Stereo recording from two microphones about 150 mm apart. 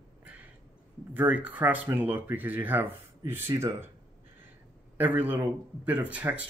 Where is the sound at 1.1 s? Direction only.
10° right (ahead or behind).